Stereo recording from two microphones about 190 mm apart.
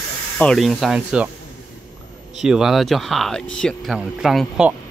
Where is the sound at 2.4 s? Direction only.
5° right (ahead or behind).